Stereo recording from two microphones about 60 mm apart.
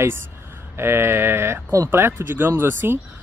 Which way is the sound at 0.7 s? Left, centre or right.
Right.